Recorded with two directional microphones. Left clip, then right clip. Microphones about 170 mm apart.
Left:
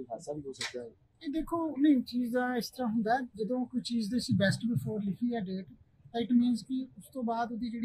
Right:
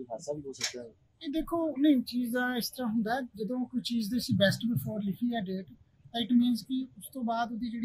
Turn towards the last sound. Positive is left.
turn(degrees=5)  # may be behind; listen again after turning